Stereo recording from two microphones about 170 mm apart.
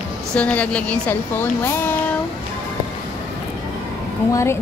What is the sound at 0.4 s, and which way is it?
A woman's voice, 5° left (ahead or behind).